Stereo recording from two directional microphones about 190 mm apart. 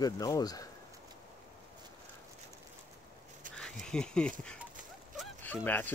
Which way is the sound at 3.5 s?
5° left (ahead or behind).